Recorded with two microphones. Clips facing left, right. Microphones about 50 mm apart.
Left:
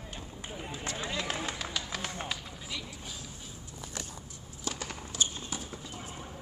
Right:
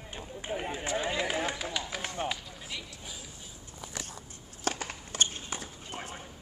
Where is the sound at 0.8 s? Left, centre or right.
Centre.